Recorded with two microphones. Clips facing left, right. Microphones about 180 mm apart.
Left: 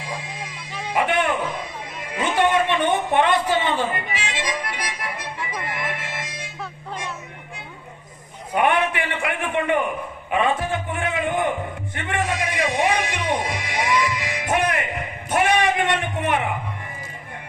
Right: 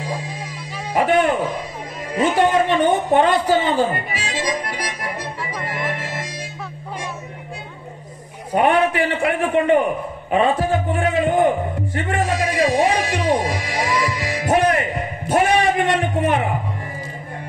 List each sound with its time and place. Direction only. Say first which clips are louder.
0.9 s a man's voice: right 5 dB; 35° right (ahead or behind)
2.1 s a sound: right 3 dB; 35° right (ahead or behind)
8.5 s a man's voice: right 4 dB; 35° right (ahead or behind)